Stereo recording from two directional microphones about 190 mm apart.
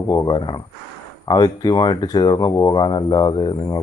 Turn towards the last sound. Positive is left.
turn(degrees=20)  # may be behind; listen again after turning